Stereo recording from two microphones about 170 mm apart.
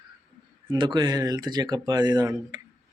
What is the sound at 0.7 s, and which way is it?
Speech, 25° right (ahead or behind).